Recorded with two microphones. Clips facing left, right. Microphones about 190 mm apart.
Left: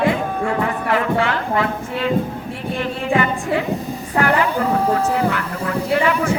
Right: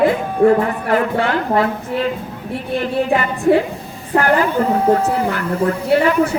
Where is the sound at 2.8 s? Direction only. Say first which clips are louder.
Right 1 dB; 40° right (ahead or behind).